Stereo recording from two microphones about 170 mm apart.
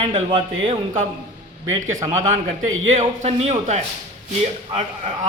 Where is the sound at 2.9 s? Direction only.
40° right (ahead or behind).